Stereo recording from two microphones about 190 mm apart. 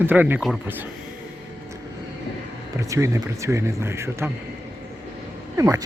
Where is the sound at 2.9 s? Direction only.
15° right (ahead or behind).